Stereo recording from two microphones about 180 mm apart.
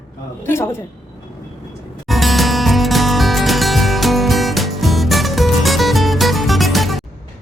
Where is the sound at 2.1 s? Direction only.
Centre (ahead or behind).